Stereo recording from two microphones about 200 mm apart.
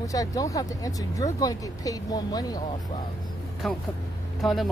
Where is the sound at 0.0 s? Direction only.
15° left (ahead or behind).